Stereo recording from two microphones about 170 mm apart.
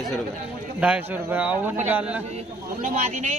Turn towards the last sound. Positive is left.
turn(degrees=-45)  # may be behind; listen again after turning